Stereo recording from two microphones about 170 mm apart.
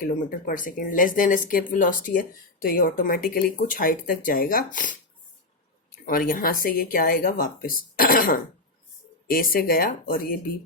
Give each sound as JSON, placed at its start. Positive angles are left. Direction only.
{"t": 0.0, "sound": "speech", "side_deg": 60}